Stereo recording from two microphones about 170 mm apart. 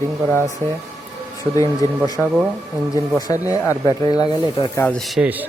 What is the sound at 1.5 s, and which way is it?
Speech, 20° left (ahead or behind).